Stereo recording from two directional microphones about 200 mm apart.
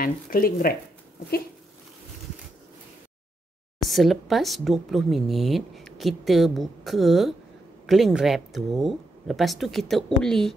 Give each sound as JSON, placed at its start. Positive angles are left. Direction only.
{"t": 0.0, "sound": "speech", "side_deg": 45}
{"t": 3.8, "sound": "speech", "side_deg": 0}